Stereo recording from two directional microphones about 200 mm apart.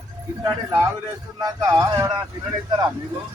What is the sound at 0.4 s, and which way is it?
Speech, 10° right (ahead or behind).